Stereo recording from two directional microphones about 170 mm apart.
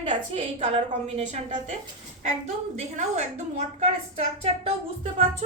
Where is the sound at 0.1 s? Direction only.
40° right (ahead or behind).